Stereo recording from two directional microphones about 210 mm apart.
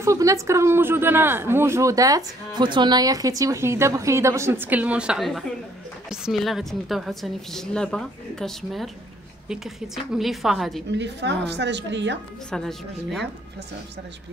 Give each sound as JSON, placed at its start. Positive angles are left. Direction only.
{"t": 0.0, "sound": "a woman's voice", "side_deg": -15}
{"t": 10.1, "sound": "a woman's voice", "side_deg": 0}
{"t": 10.9, "sound": "a woman's voice", "side_deg": -55}
{"t": 12.4, "sound": "a woman's voice", "side_deg": 0}